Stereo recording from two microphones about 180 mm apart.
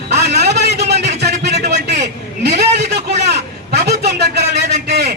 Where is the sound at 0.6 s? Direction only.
70° right (ahead or behind).